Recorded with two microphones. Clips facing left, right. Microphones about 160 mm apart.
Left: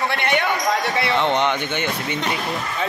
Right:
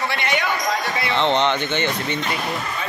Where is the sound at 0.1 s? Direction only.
55° left (ahead or behind).